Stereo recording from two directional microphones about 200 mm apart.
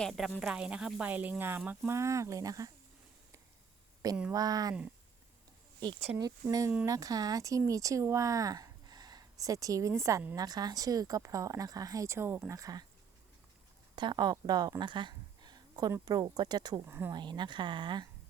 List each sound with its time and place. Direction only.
0.0 s speech: centre (ahead or behind); by 2.7 s 15° right (ahead or behind)
4.2 s speech: 15° right (ahead or behind)
5.8 s speech: 20° right (ahead or behind)
13.9 s speech: 20° right (ahead or behind)